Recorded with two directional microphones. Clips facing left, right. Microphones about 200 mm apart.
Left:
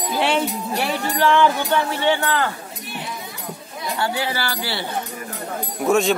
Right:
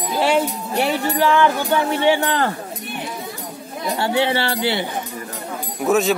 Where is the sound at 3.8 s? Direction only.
25° right (ahead or behind).